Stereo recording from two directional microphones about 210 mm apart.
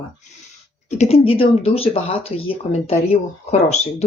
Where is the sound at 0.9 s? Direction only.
30° left (ahead or behind).